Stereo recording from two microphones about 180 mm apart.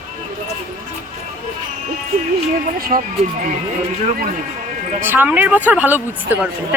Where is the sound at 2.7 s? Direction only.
55° right (ahead or behind).